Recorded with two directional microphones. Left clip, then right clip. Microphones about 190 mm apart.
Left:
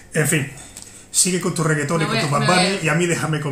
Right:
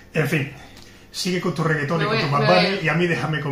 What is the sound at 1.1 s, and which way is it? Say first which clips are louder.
Speech: left 3 dB; 20° left (ahead or behind).